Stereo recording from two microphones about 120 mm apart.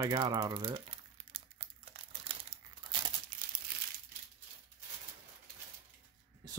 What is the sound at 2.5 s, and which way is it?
Crumpling, 25° left (ahead or behind).